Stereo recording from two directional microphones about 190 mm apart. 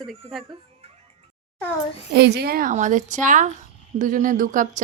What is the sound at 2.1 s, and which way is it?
Speech, 60° right (ahead or behind).